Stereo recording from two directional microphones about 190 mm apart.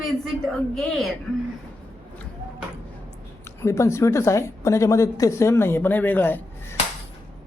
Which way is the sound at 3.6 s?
15° left (ahead or behind).